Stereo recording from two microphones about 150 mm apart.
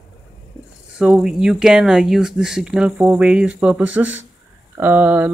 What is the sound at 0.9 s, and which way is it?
A woman's voice, 5° right (ahead or behind).